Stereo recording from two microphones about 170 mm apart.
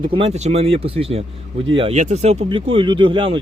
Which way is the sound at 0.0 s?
30° right (ahead or behind).